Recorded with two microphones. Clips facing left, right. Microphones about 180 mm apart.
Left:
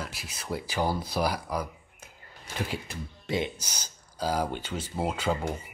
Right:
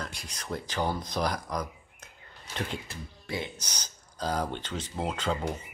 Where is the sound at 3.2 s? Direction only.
20° left (ahead or behind).